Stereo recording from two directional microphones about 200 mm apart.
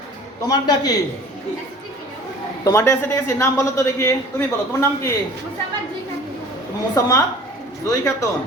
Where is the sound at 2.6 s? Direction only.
15° left (ahead or behind).